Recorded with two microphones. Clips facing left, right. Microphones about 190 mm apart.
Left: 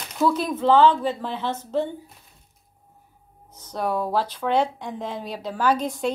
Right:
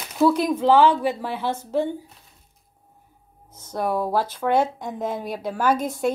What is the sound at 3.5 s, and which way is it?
Speech, 10° right (ahead or behind).